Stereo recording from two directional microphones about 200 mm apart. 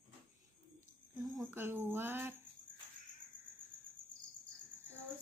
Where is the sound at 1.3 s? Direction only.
10° right (ahead or behind).